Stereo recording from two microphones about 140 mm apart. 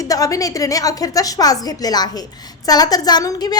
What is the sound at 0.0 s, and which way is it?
A woman's voice, 25° left (ahead or behind).